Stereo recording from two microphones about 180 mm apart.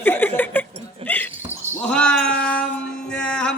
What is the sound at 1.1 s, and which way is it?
Dog, 10° left (ahead or behind).